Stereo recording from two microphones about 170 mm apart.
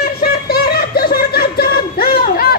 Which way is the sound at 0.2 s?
65° left (ahead or behind).